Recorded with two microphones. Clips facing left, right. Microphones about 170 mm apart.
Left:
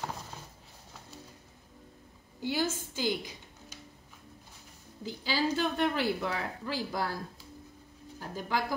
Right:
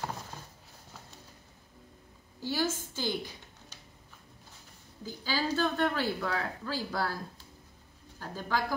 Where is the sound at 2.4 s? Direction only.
15° left (ahead or behind).